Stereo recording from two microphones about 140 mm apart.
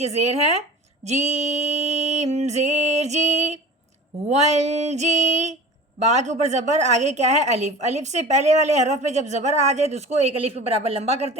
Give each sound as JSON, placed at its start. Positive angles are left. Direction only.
{"t": 0.0, "sound": "a woman's voice", "side_deg": -50}